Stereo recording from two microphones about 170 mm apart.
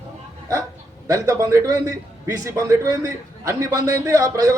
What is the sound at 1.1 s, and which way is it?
A man's voice, 20° right (ahead or behind).